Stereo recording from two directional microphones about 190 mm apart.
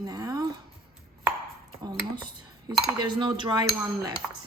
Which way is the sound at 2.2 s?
20° right (ahead or behind).